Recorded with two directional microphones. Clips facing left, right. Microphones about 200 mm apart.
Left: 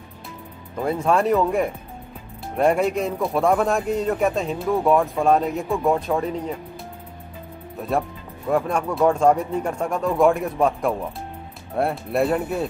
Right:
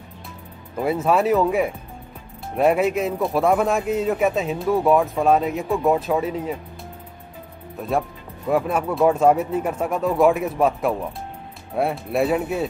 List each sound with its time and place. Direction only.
0.7 s speech: 5° right (ahead or behind)
8.5 s speech: 5° right (ahead or behind)